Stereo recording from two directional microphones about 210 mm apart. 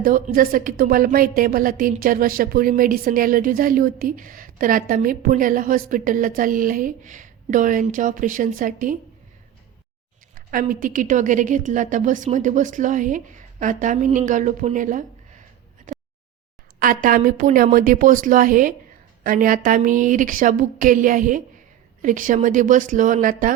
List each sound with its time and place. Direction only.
0.0 s a woman's voice: 40° right (ahead or behind)
10.3 s speech: 40° right (ahead or behind)
15.9 s a sound: 40° right (ahead or behind)
16.8 s speech: 40° right (ahead or behind)